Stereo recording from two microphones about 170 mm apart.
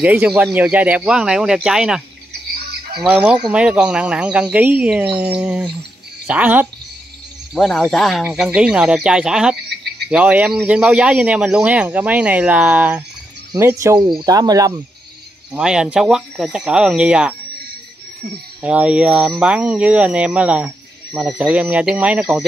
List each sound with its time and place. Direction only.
0.0 s speech: 10° right (ahead or behind)
7.5 s speech: centre (ahead or behind); by 14.7 s 20° right (ahead or behind)
15.5 s speech: 5° right (ahead or behind)
18.6 s speech: 5° right (ahead or behind)